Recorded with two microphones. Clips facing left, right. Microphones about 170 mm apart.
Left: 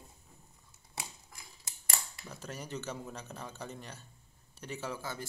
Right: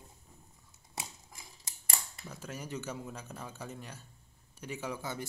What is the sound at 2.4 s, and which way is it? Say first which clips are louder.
Speech: even; 10° right (ahead or behind).